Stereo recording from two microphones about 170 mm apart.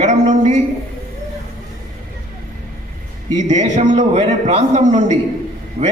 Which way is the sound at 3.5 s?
45° right (ahead or behind).